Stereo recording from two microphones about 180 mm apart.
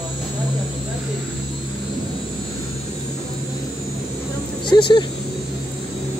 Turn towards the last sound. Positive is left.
turn(degrees=25)  # may be behind; listen again after turning